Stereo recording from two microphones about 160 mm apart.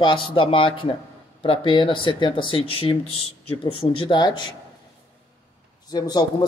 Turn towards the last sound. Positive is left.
turn(degrees=25)  # may be behind; listen again after turning